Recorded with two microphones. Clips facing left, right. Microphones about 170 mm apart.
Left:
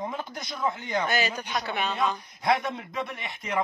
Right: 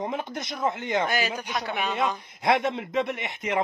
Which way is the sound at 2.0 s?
25° right (ahead or behind).